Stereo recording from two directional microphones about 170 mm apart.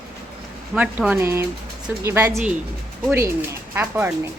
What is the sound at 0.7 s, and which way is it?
Speech, 5° right (ahead or behind).